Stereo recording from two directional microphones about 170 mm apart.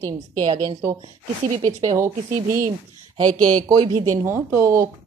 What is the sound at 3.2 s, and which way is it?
Speech, 25° right (ahead or behind).